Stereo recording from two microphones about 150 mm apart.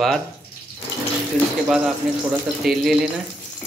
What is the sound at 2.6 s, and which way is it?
Speech, centre (ahead or behind).